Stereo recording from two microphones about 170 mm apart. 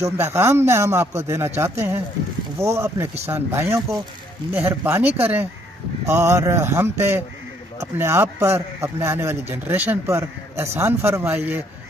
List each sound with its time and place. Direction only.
0.0 s a man's voice: 15° right (ahead or behind)